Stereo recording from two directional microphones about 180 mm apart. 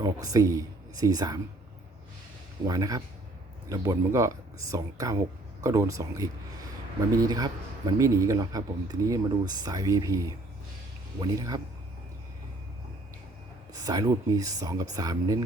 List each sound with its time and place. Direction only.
0.0 s speech: 20° right (ahead or behind)
2.6 s a man's voice: 20° right (ahead or behind)
13.7 s a man's voice: 20° right (ahead or behind)